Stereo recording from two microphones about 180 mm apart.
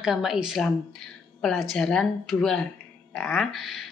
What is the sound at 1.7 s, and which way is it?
Speech, 5° left (ahead or behind).